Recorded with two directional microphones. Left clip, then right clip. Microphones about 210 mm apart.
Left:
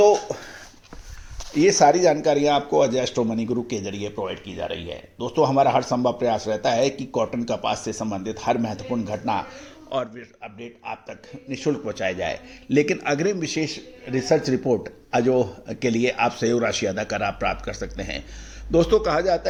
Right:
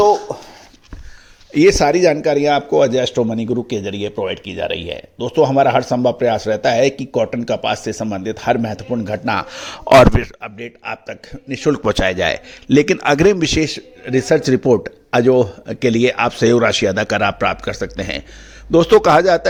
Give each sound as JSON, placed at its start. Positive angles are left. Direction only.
{"t": 1.5, "sound": "a man's voice", "side_deg": -50}